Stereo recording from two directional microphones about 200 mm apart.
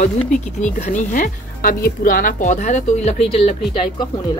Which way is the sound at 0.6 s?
35° left (ahead or behind).